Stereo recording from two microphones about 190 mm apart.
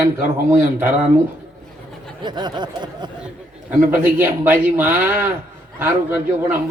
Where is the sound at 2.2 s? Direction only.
25° right (ahead or behind).